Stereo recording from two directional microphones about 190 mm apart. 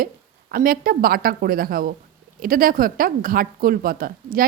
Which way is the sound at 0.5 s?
50° right (ahead or behind).